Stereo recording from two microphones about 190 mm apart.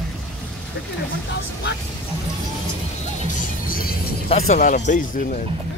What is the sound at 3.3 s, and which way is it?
Music, 50° left (ahead or behind).